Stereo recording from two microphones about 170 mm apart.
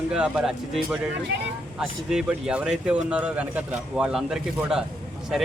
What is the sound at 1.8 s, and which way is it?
A man's voice, 5° right (ahead or behind).